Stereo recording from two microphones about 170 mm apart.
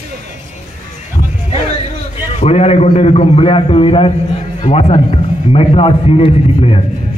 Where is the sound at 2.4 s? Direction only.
40° left (ahead or behind).